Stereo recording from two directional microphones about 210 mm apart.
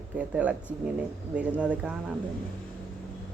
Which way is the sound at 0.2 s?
5° right (ahead or behind).